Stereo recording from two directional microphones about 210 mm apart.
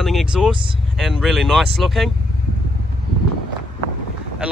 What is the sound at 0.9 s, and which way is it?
Speech, centre (ahead or behind).